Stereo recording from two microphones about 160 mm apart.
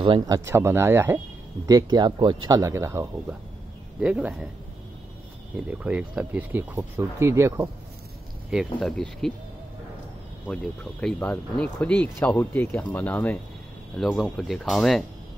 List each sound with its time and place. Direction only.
0.0 s speech: 30° right (ahead or behind)
0.5 s speech: 15° right (ahead or behind)
5.7 s speech: 10° right (ahead or behind)
8.7 s speech: 5° left (ahead or behind)
10.5 s speech: 5° left (ahead or behind)